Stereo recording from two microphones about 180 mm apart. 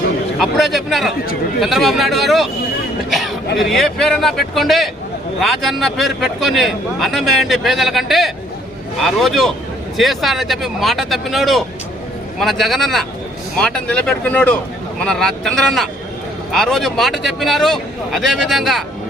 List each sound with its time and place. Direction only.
0.3 s a man's voice: centre (ahead or behind)